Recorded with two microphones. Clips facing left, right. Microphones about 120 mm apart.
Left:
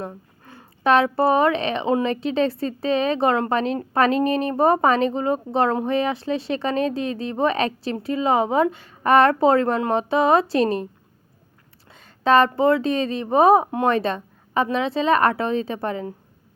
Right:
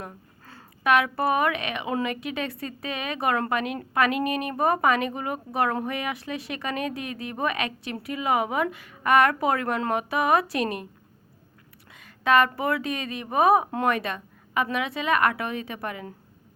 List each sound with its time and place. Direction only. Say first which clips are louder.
0.0 s a sound: left 7 dB; 25° left (ahead or behind)
0.9 s a woman's voice: left 5 dB; 30° left (ahead or behind)
11.9 s a woman's voice: left 4 dB; 30° left (ahead or behind)